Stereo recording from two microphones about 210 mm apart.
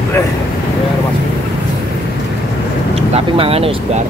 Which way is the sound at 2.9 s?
25° right (ahead or behind).